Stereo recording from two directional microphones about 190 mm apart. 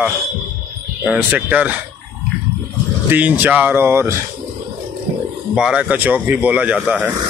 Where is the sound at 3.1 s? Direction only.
10° right (ahead or behind).